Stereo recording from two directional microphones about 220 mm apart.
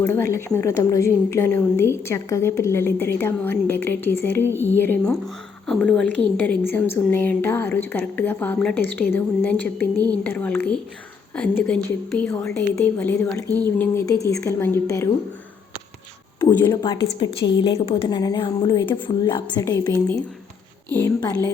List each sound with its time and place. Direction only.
0.0 s a woman's voice: 10° left (ahead or behind)
16.4 s a woman's voice: 20° left (ahead or behind)